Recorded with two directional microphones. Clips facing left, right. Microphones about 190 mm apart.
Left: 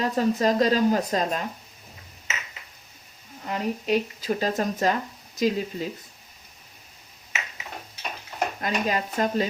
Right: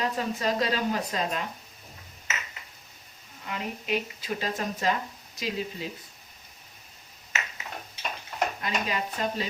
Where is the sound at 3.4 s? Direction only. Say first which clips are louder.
Left 7 dB; 40° left (ahead or behind).